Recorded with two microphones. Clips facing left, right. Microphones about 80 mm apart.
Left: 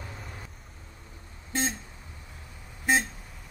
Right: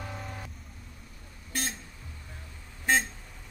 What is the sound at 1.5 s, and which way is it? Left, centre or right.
Vehicle, left.